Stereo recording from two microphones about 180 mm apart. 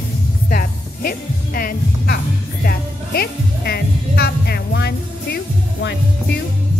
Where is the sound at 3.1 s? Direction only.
60° left (ahead or behind).